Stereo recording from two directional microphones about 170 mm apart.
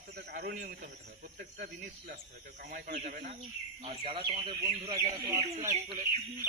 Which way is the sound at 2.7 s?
65° right (ahead or behind).